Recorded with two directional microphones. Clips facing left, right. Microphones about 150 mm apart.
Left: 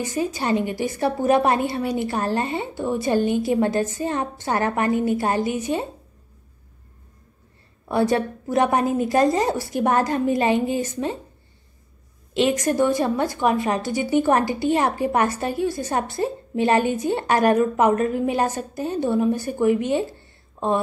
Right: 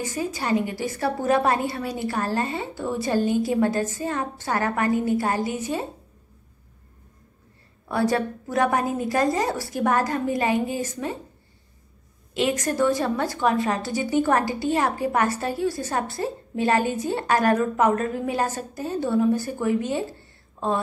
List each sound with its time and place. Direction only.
0.1 s a woman's voice: 20° left (ahead or behind)
7.9 s a woman's voice: 20° left (ahead or behind)
12.4 s a woman's voice: 20° left (ahead or behind)
20.6 s a sound: 15° left (ahead or behind)